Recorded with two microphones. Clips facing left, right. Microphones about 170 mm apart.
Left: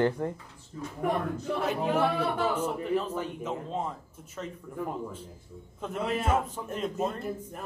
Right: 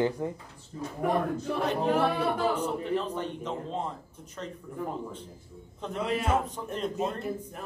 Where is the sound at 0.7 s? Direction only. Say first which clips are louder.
Right 2 dB; 30° right (ahead or behind).